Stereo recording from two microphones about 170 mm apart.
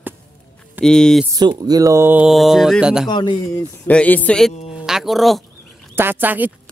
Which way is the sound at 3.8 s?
10° left (ahead or behind).